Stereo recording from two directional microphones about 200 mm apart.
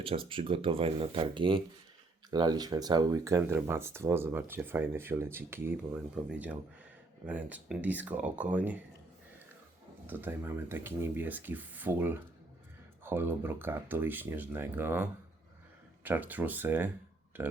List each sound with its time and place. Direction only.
0.0 s speech: 25° right (ahead or behind); by 8.8 s 10° right (ahead or behind)
10.1 s speech: 10° right (ahead or behind)
16.0 s speech: 10° right (ahead or behind)